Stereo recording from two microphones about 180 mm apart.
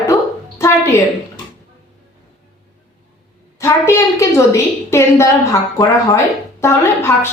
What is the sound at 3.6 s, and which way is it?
A woman's voice, 15° left (ahead or behind).